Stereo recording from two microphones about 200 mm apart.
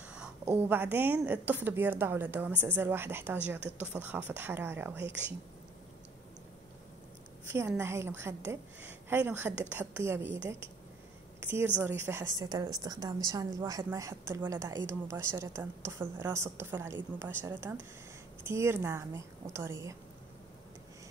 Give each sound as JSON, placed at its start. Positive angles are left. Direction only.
{"t": 0.0, "sound": "a sound", "side_deg": -5}
{"t": 0.5, "sound": "a woman's voice", "side_deg": -10}
{"t": 7.4, "sound": "a woman's voice", "side_deg": -15}
{"t": 11.4, "sound": "a woman's voice", "side_deg": -10}